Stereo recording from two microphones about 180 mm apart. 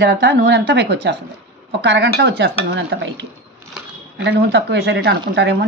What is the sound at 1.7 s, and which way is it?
Stir, 70° right (ahead or behind).